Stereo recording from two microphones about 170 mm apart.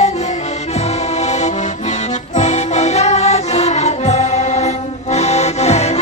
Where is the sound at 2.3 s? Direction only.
45° left (ahead or behind).